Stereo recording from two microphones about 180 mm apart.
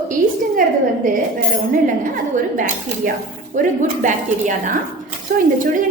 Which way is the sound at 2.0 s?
45° right (ahead or behind).